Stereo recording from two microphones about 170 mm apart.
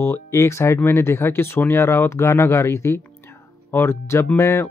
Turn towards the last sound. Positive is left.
turn(degrees=15)  # may be behind; listen again after turning